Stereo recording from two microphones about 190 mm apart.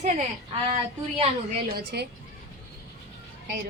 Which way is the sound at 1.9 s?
60° right (ahead or behind).